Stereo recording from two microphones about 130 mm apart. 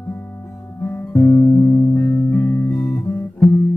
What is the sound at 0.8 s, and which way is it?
Music, 15° left (ahead or behind).